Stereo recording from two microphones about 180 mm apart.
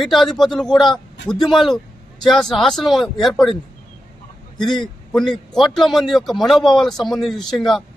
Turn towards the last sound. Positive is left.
turn(degrees=0)  # may be behind; listen again after turning